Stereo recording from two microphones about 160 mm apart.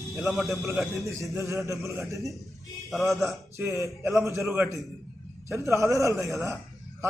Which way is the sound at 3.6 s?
20° right (ahead or behind).